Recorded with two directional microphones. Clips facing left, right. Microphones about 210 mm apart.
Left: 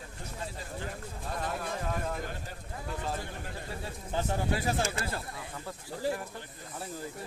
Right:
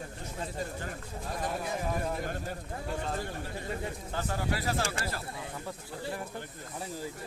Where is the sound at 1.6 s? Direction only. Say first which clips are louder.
Right 2 dB; 10° right (ahead or behind).